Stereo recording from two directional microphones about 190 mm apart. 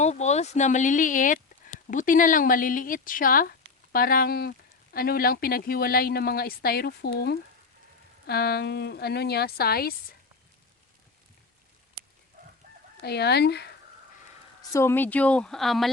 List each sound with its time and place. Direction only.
0.0 s speech: 35° left (ahead or behind); by 10.2 s 55° left (ahead or behind)
13.0 s speech: 60° left (ahead or behind)
14.7 s speech: 15° left (ahead or behind)